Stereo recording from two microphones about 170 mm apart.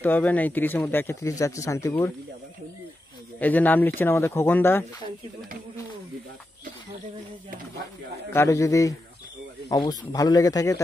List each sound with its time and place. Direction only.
0.0 s speech: 10° left (ahead or behind)
3.3 s speech: 10° left (ahead or behind)
8.3 s a man's voice: 15° left (ahead or behind)